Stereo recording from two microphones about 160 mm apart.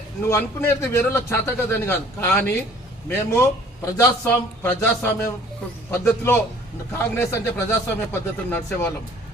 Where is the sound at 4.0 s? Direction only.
15° left (ahead or behind).